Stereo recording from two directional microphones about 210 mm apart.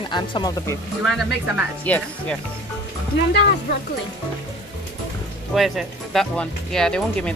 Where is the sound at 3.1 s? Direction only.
55° left (ahead or behind).